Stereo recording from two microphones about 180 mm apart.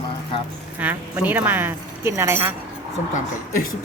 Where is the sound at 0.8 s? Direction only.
10° right (ahead or behind).